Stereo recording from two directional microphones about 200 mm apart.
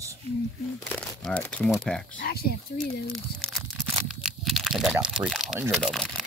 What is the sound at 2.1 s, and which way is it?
Speech, 50° left (ahead or behind).